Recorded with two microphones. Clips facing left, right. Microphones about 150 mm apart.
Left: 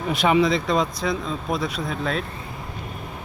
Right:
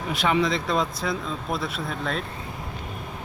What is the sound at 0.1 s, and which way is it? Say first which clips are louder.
Speech: left 4 dB; 15° left (ahead or behind).